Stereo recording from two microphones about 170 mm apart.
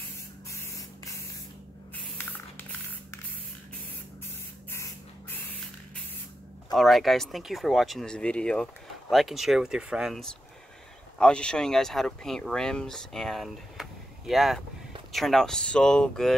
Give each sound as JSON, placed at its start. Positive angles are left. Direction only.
{"t": 0.5, "sound": "spray", "side_deg": 20}
{"t": 6.7, "sound": "speech", "side_deg": 0}